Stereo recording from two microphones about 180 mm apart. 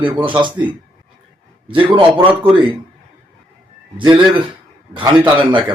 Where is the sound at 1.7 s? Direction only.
30° right (ahead or behind).